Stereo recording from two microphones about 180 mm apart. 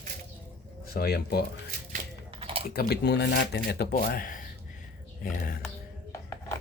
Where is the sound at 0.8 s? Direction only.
60° left (ahead or behind).